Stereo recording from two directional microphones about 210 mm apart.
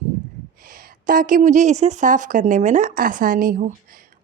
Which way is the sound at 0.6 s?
45° right (ahead or behind).